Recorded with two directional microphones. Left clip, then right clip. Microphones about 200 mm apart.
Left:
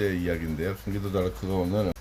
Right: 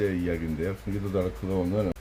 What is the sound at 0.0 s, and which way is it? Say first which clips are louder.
Speech: even; 10° left (ahead or behind).